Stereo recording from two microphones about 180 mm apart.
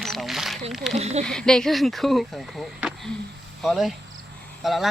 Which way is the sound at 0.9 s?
35° right (ahead or behind).